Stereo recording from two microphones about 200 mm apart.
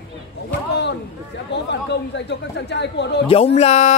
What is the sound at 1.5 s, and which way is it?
Speech, 60° left (ahead or behind).